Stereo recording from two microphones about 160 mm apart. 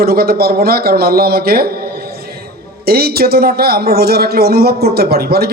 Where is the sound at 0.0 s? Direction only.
70° right (ahead or behind).